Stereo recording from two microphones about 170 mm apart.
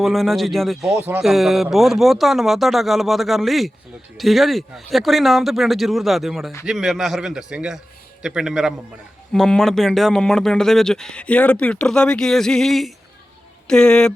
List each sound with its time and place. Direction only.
0.0 s speech: centre (ahead or behind)
0.9 s speech: 10° right (ahead or behind)
1.2 s speech: centre (ahead or behind)